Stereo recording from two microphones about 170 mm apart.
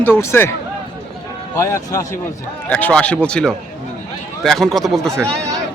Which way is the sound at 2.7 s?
10° left (ahead or behind).